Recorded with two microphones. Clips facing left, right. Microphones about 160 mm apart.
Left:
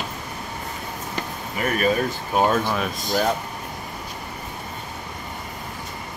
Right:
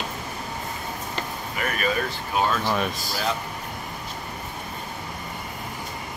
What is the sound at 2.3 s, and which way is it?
Speech, 45° left (ahead or behind).